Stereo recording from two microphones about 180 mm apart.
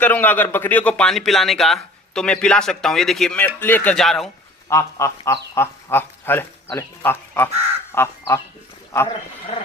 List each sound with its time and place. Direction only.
0.0 s a man's voice: 10° left (ahead or behind)
4.7 s duck: 15° left (ahead or behind)
5.5 s speech: 10° left (ahead or behind)
7.9 s duck: 15° left (ahead or behind)